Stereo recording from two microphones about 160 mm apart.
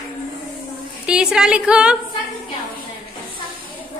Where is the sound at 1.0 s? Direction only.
5° right (ahead or behind).